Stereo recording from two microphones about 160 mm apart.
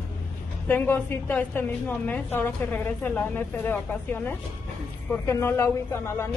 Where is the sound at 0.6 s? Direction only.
10° left (ahead or behind).